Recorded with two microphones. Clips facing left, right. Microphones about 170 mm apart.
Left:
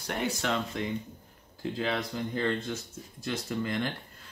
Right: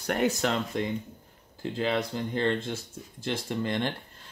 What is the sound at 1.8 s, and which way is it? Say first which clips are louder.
Speech: right 4 dB; 30° right (ahead or behind).